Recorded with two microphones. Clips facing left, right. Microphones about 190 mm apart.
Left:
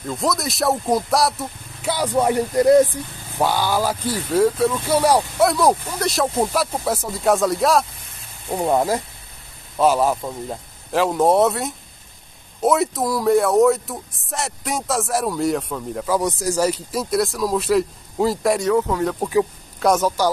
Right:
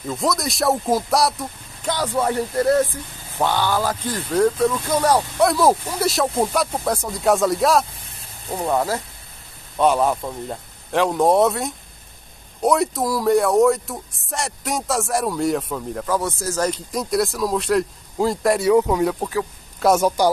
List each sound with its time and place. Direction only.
0.0 s speech: centre (ahead or behind)
5.5 s speech: centre (ahead or behind)
8.5 s speech: 15° left (ahead or behind)
9.8 s speech: 5° left (ahead or behind)
16.2 s speech: 15° left (ahead or behind); by 18.7 s centre (ahead or behind)
18.7 s speech: 15° right (ahead or behind)
19.8 s speech: 5° right (ahead or behind)